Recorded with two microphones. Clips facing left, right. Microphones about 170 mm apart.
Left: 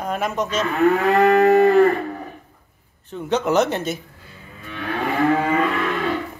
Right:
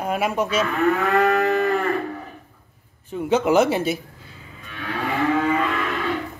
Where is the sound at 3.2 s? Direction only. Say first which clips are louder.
Right 1 dB; 10° right (ahead or behind).